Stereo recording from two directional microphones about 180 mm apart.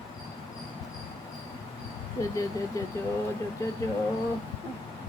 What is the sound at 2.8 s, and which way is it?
Speech, 20° left (ahead or behind).